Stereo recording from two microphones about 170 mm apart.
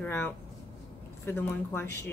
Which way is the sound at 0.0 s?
10° left (ahead or behind).